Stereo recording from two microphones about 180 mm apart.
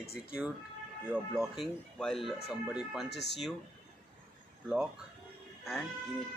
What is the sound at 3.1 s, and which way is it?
Speech, 70° left (ahead or behind).